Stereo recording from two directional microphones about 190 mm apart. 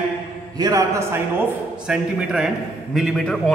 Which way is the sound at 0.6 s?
20° right (ahead or behind).